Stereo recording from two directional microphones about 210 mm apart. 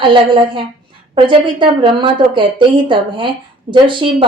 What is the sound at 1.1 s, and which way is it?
Speech, 25° right (ahead or behind).